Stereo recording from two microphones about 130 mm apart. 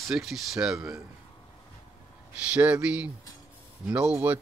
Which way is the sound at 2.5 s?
10° right (ahead or behind).